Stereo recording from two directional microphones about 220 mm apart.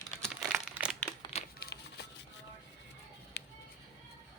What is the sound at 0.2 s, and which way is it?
Crumpling, centre (ahead or behind).